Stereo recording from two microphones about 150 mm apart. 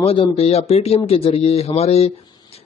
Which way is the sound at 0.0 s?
40° left (ahead or behind).